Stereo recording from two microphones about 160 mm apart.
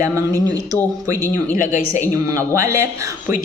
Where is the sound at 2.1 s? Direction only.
20° right (ahead or behind).